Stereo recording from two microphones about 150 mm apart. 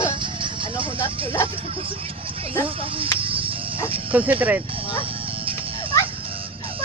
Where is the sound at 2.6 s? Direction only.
35° right (ahead or behind).